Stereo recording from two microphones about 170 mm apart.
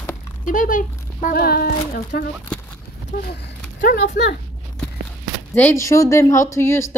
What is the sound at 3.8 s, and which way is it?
Speech, 55° left (ahead or behind).